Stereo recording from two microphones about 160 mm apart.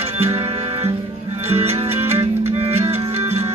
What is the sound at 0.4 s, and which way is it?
Music, 35° right (ahead or behind).